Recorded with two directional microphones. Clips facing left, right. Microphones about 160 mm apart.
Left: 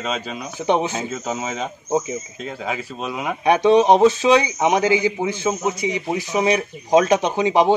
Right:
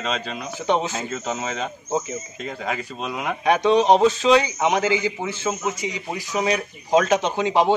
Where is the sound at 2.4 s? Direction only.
5° left (ahead or behind).